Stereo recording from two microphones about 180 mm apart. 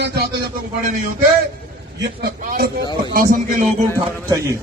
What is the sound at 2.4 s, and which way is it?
A man's voice, 50° right (ahead or behind).